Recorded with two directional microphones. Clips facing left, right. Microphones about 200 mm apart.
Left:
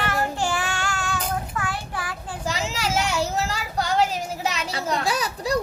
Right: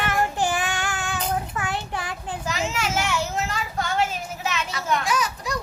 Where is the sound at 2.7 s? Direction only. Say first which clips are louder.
Left 1 dB; 35° left (ahead or behind).